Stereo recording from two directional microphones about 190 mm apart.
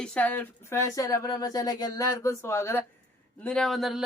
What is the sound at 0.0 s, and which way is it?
Speech, 5° left (ahead or behind).